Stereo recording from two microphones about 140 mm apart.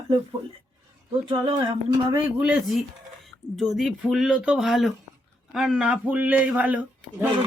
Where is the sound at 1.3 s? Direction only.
35° right (ahead or behind).